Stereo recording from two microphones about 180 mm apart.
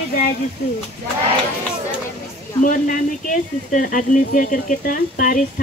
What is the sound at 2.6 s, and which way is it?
Speech, 45° left (ahead or behind).